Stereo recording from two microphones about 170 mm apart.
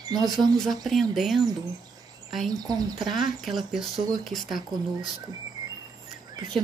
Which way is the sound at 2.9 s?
Centre (ahead or behind).